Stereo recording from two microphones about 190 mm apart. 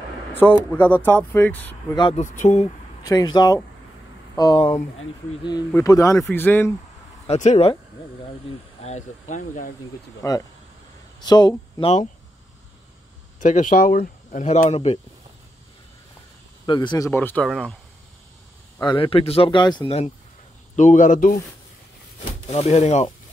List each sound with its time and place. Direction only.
0.3 s a sound: 10° left (ahead or behind)
0.6 s speech: 10° left (ahead or behind)
2.1 s speech: 40° left (ahead or behind)
3.0 s speech: 20° left (ahead or behind)
7.2 s speech: 35° left (ahead or behind)
8.8 s speech: 40° left (ahead or behind)
10.2 s speech: 15° left (ahead or behind)
13.4 s speech: 40° left (ahead or behind)
16.6 s speech: 25° left (ahead or behind)
17.1 s speech: 10° left (ahead or behind)
18.8 s speech: 25° left (ahead or behind)
20.7 s a man's voice: 40° left (ahead or behind)
22.5 s speech: 35° left (ahead or behind)